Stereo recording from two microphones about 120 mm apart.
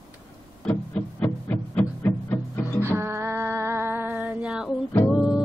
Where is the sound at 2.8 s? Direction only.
20° right (ahead or behind).